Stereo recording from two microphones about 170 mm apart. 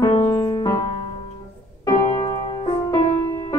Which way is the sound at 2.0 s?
35° left (ahead or behind).